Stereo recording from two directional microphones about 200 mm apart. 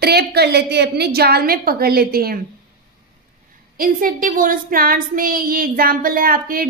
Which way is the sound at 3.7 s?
45° right (ahead or behind).